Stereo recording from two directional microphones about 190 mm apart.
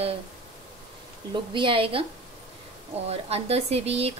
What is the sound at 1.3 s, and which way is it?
Speech, 25° right (ahead or behind).